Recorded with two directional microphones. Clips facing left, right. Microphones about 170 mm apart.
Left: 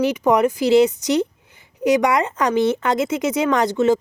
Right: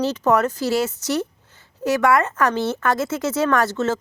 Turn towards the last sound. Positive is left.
turn(degrees=15)  # may be behind; listen again after turning